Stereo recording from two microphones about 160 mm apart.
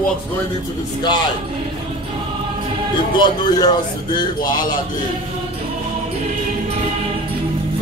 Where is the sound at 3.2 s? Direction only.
25° left (ahead or behind).